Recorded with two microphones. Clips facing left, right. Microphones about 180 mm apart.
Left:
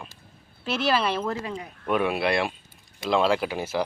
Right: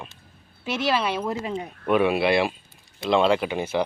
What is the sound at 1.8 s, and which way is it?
Speech, centre (ahead or behind).